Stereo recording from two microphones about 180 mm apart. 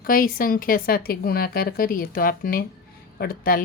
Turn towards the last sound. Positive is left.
turn(degrees=50)  # may be behind; listen again after turning